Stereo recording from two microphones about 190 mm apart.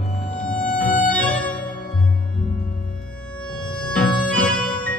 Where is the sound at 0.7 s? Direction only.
10° left (ahead or behind).